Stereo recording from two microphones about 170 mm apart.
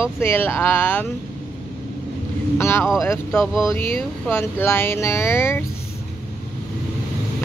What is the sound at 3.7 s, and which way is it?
Speech, 15° left (ahead or behind).